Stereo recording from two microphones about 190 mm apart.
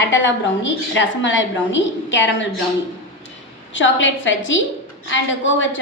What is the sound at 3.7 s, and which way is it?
A woman's voice, 80° left.